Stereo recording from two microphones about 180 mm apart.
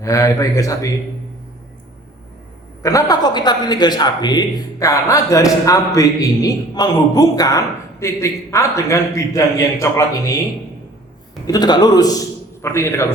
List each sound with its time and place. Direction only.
0.0 s speech: 15° left (ahead or behind)
2.8 s a woman's voice: 20° left (ahead or behind)
11.4 s a woman's voice: 20° left (ahead or behind)